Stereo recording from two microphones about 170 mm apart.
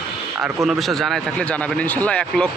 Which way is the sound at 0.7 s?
Centre (ahead or behind).